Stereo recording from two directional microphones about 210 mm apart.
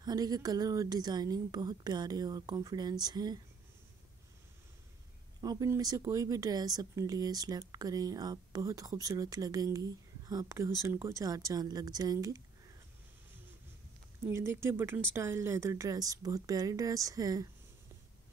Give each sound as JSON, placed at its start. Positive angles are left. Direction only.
{"t": 0.0, "sound": "a woman's voice", "side_deg": -20}
{"t": 5.4, "sound": "speech", "side_deg": -15}
{"t": 14.3, "sound": "speech", "side_deg": -10}